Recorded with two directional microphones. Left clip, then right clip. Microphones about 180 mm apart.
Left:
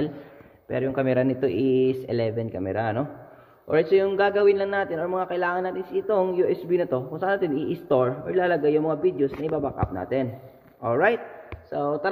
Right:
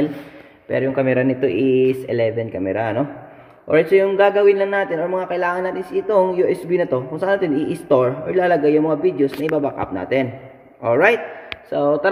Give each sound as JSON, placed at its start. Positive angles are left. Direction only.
{"t": 0.7, "sound": "a man's voice", "side_deg": 0}
{"t": 11.7, "sound": "speech", "side_deg": -20}